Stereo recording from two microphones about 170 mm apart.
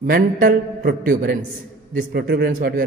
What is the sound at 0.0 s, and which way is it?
A woman's voice, 60° right (ahead or behind).